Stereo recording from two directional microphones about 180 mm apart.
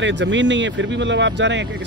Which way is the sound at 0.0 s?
90° right.